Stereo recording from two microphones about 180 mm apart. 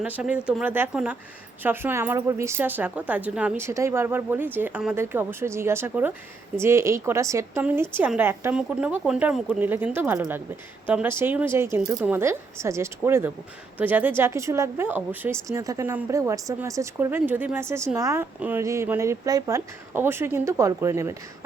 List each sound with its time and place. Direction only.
0.0 s a woman's voice: 5° right (ahead or behind)